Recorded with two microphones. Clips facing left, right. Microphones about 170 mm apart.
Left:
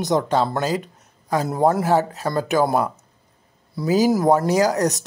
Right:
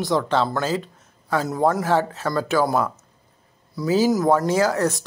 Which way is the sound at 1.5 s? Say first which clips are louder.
Left 2 dB; 25° left (ahead or behind).